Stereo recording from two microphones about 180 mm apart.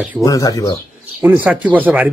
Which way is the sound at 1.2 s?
10° right (ahead or behind).